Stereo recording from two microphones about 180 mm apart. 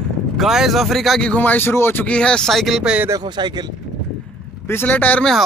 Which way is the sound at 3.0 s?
20° right (ahead or behind).